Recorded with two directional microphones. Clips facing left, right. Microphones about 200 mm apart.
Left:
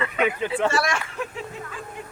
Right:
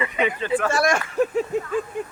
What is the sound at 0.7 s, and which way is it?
Speech, 45° right (ahead or behind).